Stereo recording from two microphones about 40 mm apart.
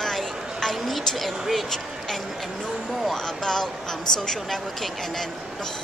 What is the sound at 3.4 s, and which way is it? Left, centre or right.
Speech, centre.